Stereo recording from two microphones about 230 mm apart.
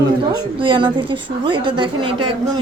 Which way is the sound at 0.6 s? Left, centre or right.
Right.